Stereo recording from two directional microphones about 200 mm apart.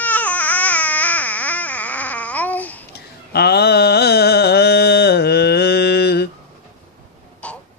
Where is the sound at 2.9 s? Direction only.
55° left (ahead or behind).